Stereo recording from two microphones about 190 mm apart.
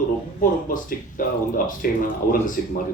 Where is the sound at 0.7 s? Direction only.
45° left (ahead or behind).